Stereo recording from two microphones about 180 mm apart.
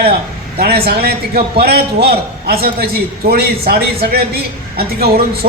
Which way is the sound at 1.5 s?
60° right (ahead or behind).